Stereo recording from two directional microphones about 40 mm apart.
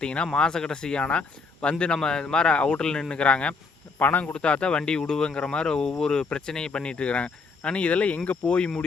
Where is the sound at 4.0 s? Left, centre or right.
Left.